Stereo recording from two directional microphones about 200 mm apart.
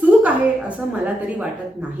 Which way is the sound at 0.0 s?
10° right (ahead or behind).